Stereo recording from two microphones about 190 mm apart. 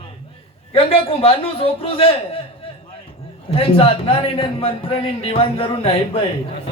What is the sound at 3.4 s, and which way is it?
A man's voice, 30° left (ahead or behind).